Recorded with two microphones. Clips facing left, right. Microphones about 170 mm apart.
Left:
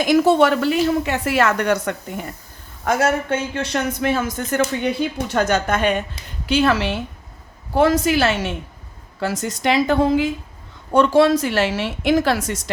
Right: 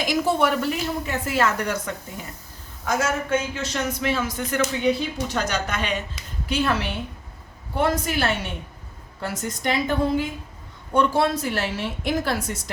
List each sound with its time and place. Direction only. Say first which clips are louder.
0.0 s speech: left 7 dB; 60° left (ahead or behind)
6.4 s a woman's voice: left 6 dB; 90° left